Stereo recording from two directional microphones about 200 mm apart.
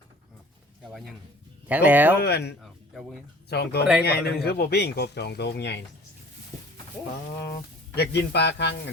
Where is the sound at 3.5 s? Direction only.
55° left (ahead or behind).